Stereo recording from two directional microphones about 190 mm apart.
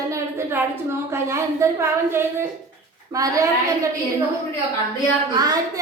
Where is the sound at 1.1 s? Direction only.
15° right (ahead or behind).